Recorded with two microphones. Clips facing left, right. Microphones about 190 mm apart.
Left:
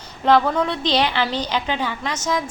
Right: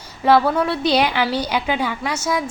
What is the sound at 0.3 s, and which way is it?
A woman's voice, 10° right (ahead or behind).